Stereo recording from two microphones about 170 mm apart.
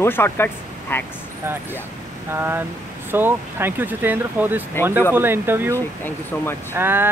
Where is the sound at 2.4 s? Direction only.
15° right (ahead or behind).